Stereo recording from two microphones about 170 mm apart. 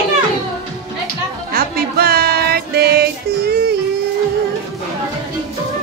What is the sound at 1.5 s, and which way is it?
Music, 65° right (ahead or behind).